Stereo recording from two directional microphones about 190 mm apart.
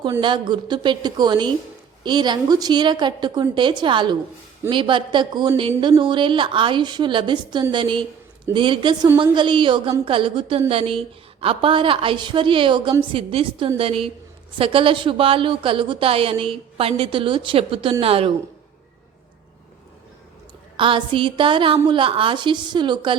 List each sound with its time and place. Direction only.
0.2 s speech: 25° right (ahead or behind)
20.7 s speech: 25° right (ahead or behind)